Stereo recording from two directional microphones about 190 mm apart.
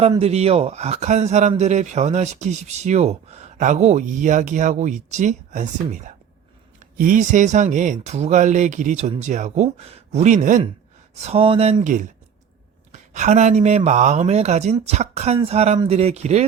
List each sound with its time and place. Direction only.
0.0 s speech: 30° right (ahead or behind)
7.0 s speech: 45° right (ahead or behind)